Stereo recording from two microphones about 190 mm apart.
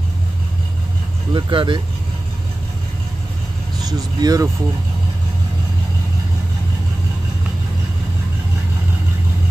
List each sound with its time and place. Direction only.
1.3 s speech: 25° right (ahead or behind)
4.2 s speech: 20° right (ahead or behind)